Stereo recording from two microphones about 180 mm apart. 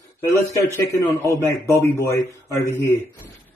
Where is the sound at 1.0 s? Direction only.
15° left (ahead or behind).